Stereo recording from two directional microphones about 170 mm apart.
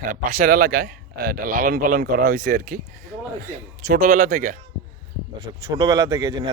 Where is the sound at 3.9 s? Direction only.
55° right (ahead or behind).